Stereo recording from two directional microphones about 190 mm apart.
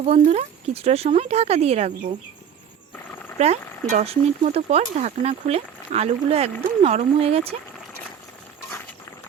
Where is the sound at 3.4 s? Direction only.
35° right (ahead or behind).